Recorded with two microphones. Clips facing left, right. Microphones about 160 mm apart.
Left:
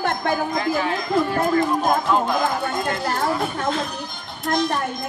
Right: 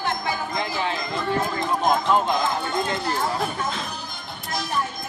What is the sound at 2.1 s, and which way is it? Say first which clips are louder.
Speech: even; 20° right (ahead or behind).